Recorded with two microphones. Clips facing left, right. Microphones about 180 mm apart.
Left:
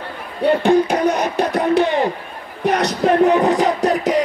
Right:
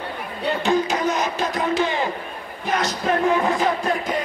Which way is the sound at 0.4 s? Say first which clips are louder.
Left 7 dB; 55° left (ahead or behind).